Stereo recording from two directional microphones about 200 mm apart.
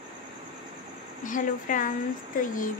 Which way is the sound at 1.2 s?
40° left (ahead or behind).